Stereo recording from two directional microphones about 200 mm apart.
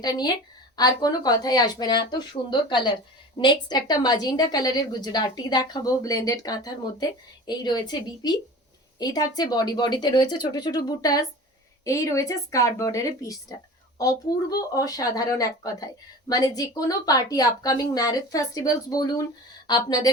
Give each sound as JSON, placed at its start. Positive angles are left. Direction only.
{"t": 0.0, "sound": "a woman's voice", "side_deg": 20}